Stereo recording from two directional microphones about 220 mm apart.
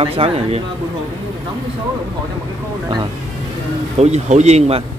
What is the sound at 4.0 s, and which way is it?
Speech, 30° right (ahead or behind).